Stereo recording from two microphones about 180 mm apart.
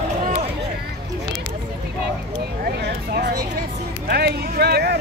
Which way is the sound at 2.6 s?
65° right (ahead or behind).